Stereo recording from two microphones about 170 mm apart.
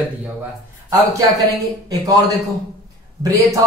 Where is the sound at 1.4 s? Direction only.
20° right (ahead or behind).